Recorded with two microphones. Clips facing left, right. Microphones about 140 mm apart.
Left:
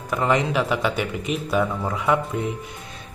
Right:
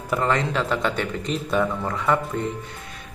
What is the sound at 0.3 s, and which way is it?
Speech, 15° left (ahead or behind).